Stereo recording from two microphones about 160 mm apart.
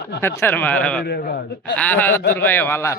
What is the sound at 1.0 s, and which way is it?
Speech, 80° left.